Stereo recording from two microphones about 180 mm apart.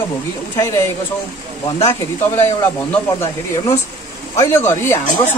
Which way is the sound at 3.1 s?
20° left (ahead or behind).